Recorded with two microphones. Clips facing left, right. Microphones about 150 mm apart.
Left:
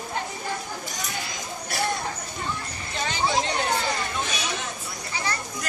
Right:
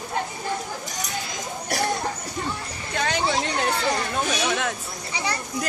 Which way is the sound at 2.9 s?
60° right (ahead or behind).